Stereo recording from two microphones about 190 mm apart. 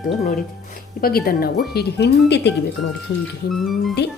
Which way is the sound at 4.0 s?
60° left (ahead or behind).